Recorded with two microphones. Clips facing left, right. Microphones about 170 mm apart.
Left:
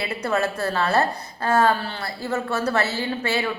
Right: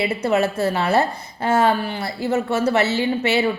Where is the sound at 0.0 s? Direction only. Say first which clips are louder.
Right 5 dB; 20° right (ahead or behind).